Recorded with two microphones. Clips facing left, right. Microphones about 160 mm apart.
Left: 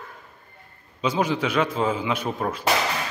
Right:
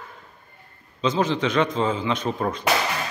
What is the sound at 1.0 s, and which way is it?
A man's voice, 10° left (ahead or behind).